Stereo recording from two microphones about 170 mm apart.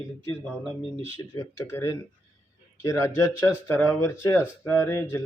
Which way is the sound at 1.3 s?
15° left (ahead or behind).